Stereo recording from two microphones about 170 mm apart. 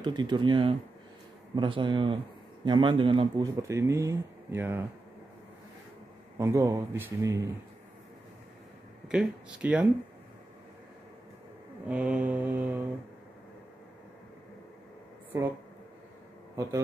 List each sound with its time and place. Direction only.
0.0 s speech: 25° right (ahead or behind)
6.3 s speech: 20° right (ahead or behind)
9.0 s speech: 5° right (ahead or behind)
11.9 s speech: 5° right (ahead or behind)